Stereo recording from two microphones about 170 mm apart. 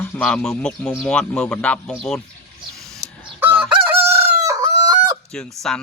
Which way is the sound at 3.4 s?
10° right (ahead or behind).